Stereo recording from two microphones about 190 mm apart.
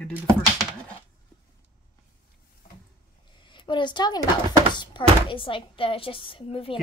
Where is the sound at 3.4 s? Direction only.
25° left (ahead or behind).